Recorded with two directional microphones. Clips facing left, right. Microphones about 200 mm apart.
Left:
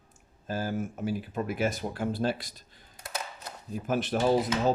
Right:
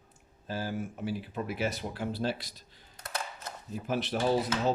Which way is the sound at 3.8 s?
50° left (ahead or behind).